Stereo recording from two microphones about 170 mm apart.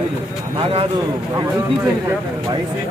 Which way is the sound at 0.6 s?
35° right (ahead or behind).